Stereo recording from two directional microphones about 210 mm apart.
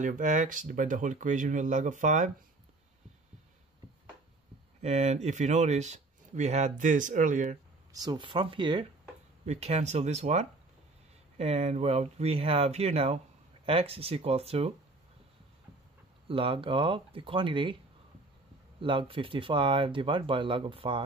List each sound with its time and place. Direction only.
0.0 s speech: 35° right (ahead or behind)
4.8 s speech: 30° right (ahead or behind)
7.9 s speech: 20° right (ahead or behind)
16.3 s speech: 25° right (ahead or behind)
18.8 s speech: 25° right (ahead or behind)